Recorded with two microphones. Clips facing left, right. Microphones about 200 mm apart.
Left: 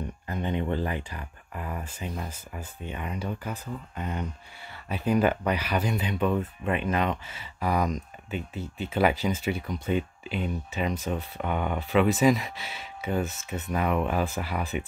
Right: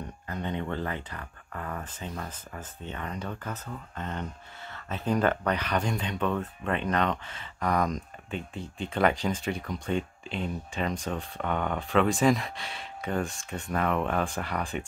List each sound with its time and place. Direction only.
0.3 s speech: 15° left (ahead or behind)